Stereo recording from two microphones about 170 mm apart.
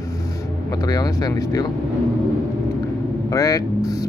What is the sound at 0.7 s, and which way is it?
Speech, 20° left (ahead or behind).